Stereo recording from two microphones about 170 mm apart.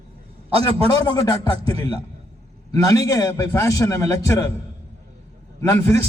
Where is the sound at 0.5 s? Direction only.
35° right (ahead or behind).